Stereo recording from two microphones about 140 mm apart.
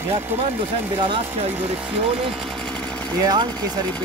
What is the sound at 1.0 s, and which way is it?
Speech, 40° right (ahead or behind).